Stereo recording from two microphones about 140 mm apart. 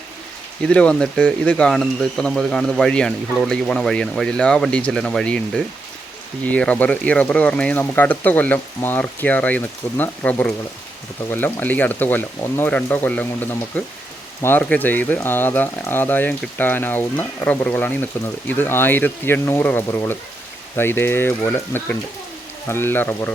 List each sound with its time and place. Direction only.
0.6 s speech: 10° left (ahead or behind)